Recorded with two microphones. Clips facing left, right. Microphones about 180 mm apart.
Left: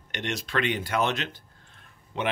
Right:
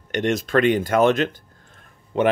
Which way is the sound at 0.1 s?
45° right (ahead or behind).